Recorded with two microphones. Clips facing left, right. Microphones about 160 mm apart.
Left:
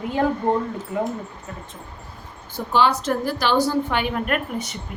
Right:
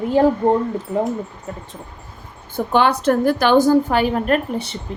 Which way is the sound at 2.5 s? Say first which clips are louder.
Right 3 dB; 55° right (ahead or behind).